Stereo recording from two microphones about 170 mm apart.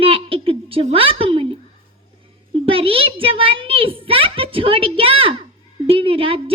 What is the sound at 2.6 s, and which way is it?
A child's voice, 35° right (ahead or behind).